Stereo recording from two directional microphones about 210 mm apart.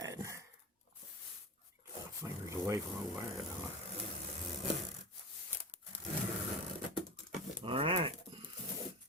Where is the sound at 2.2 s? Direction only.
15° right (ahead or behind).